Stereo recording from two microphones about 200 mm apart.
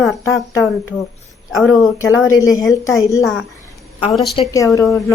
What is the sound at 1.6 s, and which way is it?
Speech, centre (ahead or behind).